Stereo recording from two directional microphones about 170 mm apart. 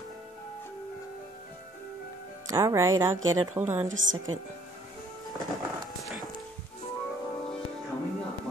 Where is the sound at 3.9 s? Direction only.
90° right.